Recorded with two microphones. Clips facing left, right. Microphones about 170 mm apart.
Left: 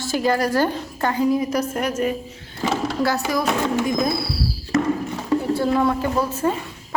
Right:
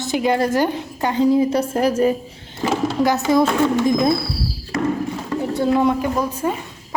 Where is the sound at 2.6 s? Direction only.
20° right (ahead or behind).